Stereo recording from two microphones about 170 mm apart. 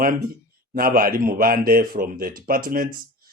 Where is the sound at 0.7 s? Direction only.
55° right (ahead or behind).